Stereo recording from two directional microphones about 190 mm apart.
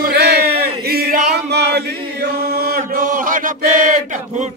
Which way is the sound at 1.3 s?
60° right (ahead or behind).